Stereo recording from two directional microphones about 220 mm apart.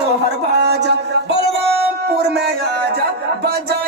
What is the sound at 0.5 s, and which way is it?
Music, 50° right (ahead or behind).